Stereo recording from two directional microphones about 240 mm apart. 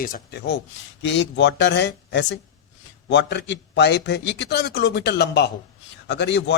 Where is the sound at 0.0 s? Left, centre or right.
Left.